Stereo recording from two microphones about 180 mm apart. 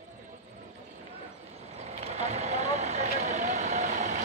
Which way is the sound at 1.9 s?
35° right (ahead or behind).